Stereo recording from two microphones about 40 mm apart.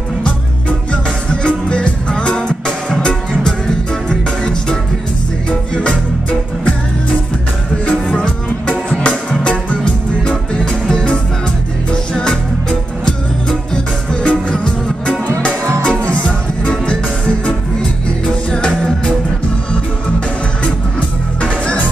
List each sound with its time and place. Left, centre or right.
1.3 s music: left
8.6 s music: left
14.2 s music: left
18.5 s music: centre